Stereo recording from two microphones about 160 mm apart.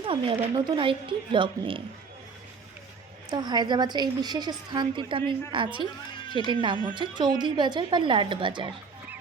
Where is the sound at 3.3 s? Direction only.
25° right (ahead or behind).